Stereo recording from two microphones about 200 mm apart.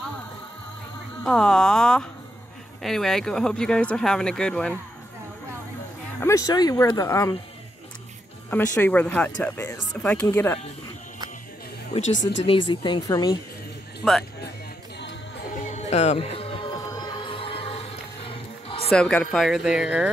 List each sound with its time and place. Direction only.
1.2 s speech: 5° left (ahead or behind)
6.1 s speech: 15° left (ahead or behind)
8.7 s speech: 10° left (ahead or behind)
12.0 s speech: 65° left (ahead or behind)
12.4 s speech: 25° left (ahead or behind)
14.0 s speech: centre (ahead or behind)
15.6 s music: 35° left (ahead or behind)
18.9 s speech: 5° left (ahead or behind)